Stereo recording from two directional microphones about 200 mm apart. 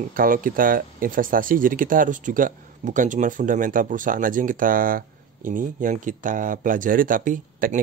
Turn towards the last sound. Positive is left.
turn(degrees=-40)  # may be behind; listen again after turning